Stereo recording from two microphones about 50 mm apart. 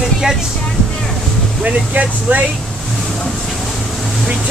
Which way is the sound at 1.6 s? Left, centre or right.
Right.